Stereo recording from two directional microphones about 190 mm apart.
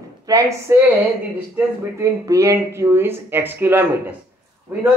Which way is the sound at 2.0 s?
15° right (ahead or behind).